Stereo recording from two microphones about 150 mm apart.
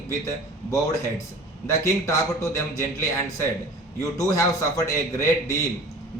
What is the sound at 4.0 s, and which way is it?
A man's voice, 20° left (ahead or behind).